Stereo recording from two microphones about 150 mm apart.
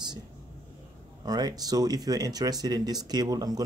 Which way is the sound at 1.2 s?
25° right (ahead or behind).